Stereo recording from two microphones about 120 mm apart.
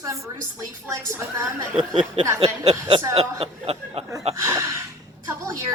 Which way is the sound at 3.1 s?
55° right (ahead or behind).